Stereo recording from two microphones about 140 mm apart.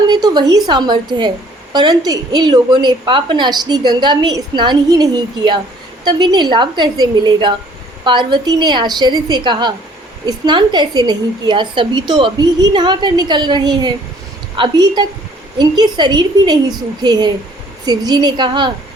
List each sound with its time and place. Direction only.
0.1 s a woman's voice: 30° right (ahead or behind)